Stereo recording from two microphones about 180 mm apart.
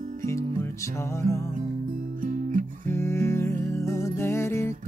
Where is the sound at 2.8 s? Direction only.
15° left (ahead or behind).